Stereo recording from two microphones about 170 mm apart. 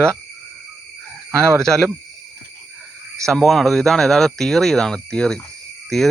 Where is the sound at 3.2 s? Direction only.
Centre (ahead or behind).